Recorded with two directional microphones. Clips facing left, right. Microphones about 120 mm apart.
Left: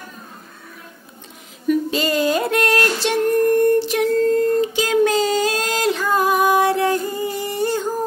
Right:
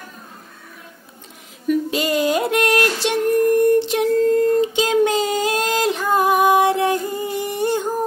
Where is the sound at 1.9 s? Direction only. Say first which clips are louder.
Even; 15° right (ahead or behind).